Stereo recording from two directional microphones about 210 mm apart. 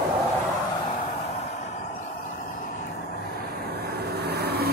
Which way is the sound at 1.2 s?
30° left (ahead or behind).